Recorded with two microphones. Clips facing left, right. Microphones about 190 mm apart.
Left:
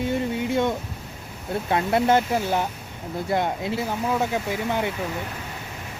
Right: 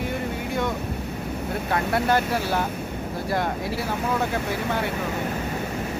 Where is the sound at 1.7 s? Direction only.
20° left (ahead or behind).